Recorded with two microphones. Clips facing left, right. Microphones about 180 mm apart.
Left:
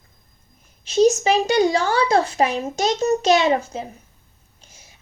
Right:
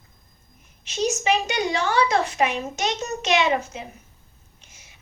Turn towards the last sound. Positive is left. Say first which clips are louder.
# left 3 dB
turn(degrees=35)  # may be behind; listen again after turning